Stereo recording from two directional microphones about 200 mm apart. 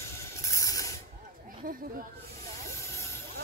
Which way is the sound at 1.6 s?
45° right (ahead or behind).